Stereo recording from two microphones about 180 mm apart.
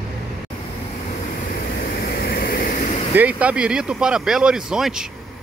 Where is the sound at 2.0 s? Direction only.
55° left (ahead or behind).